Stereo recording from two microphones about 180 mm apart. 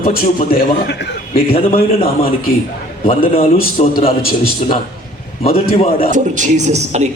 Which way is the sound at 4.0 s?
30° left (ahead or behind).